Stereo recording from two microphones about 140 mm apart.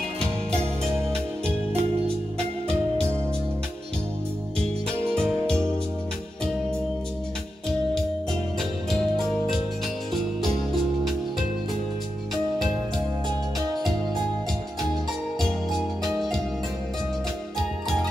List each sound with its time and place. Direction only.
1.7 s music: 45° right (ahead or behind)
5.1 s music: 5° left (ahead or behind)
10.4 s music: centre (ahead or behind)
15.7 s music: centre (ahead or behind)